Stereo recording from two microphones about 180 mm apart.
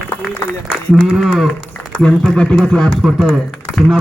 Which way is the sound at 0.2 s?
5° left (ahead or behind).